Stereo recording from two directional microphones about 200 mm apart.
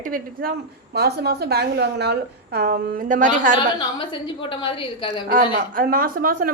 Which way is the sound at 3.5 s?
25° left (ahead or behind).